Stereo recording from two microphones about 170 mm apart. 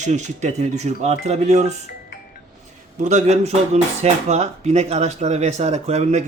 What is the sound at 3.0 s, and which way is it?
A man's voice, 45° right (ahead or behind).